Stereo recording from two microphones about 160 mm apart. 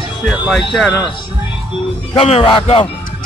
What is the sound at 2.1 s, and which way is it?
Speech, 35° left (ahead or behind).